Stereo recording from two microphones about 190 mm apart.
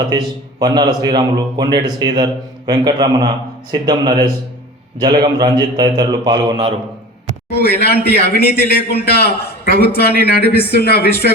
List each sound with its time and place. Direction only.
0.1 s a man's voice: 20° right (ahead or behind)
7.5 s a man's voice: 55° left (ahead or behind)